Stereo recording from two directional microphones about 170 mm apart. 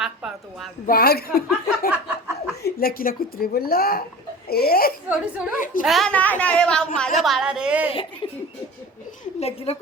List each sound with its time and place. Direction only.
0.0 s a sound: centre (ahead or behind)
0.9 s a woman's voice: 65° left (ahead or behind)
1.9 s laughter: 10° right (ahead or behind)
2.6 s a woman's voice: 65° left (ahead or behind)
5.0 s a woman's voice: 5° right (ahead or behind)
5.5 s a woman's voice: 50° left (ahead or behind)
5.8 s a woman's voice: centre (ahead or behind)
8.2 s a sound: 30° left (ahead or behind)
9.4 s a woman's voice: 35° left (ahead or behind)